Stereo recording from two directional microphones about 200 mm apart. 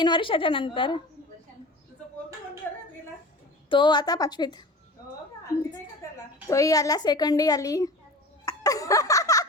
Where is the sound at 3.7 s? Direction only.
20° left (ahead or behind).